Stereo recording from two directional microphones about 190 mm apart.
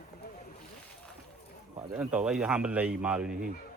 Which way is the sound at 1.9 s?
5° right (ahead or behind).